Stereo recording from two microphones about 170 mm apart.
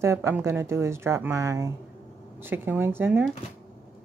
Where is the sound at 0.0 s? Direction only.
15° right (ahead or behind).